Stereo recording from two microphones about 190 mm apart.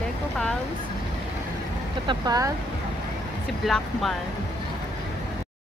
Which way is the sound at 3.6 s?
Centre (ahead or behind).